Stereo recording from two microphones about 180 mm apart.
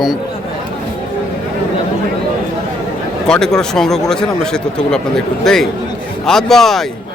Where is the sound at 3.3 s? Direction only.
5° left (ahead or behind).